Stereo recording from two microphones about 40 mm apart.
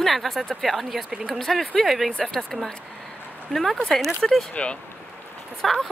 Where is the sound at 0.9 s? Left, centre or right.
Centre.